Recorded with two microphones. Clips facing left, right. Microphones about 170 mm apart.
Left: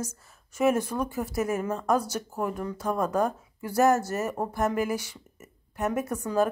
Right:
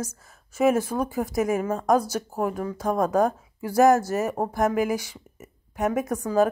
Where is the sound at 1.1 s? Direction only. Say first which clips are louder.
Right 6 dB; 10° right (ahead or behind).